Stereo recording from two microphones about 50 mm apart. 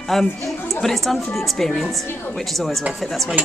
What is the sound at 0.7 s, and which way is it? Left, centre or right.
A woman's voice, centre.